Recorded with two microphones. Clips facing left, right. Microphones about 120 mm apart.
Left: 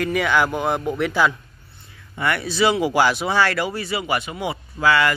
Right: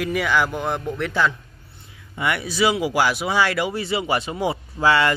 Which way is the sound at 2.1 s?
15° right (ahead or behind).